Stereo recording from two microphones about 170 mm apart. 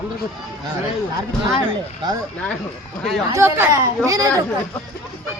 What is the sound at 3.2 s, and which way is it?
Speech, 15° right (ahead or behind).